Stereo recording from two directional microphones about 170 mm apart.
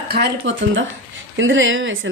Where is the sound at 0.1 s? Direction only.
85° right.